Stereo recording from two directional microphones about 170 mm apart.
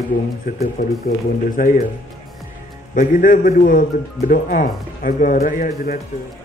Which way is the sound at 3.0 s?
50° left (ahead or behind).